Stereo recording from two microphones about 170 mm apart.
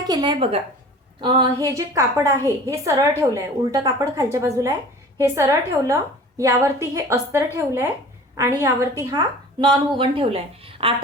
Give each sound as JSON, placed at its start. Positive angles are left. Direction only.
{"t": 0.1, "sound": "a woman's voice", "side_deg": -25}